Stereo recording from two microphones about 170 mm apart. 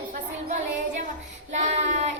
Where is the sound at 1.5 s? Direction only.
45° right (ahead or behind).